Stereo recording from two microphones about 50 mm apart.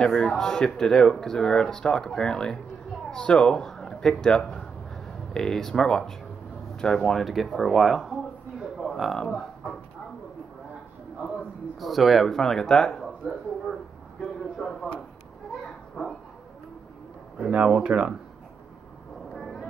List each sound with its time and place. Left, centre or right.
0.0 s speech: centre
9.1 s speech: centre
11.8 s a sound: centre
16.0 s bow-wow: centre
17.4 s speech: right
19.3 s vehicle: centre